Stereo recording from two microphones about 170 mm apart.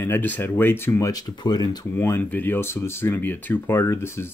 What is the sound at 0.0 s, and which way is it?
Speech, 10° left (ahead or behind).